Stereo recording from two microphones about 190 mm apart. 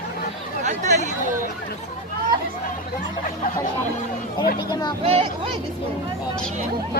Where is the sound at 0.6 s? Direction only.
40° right (ahead or behind).